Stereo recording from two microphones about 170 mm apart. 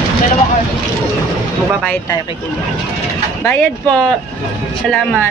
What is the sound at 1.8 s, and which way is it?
Speech, 10° left (ahead or behind).